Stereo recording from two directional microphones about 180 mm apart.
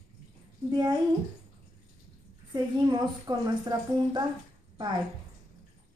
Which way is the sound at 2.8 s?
20° right (ahead or behind).